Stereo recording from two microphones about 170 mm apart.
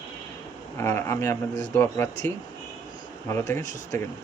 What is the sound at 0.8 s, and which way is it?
Speech, 15° left (ahead or behind).